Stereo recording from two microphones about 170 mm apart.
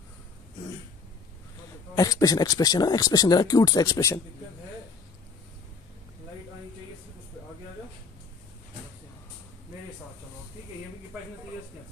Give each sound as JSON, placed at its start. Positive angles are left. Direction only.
{"t": 2.0, "sound": "speech", "side_deg": 20}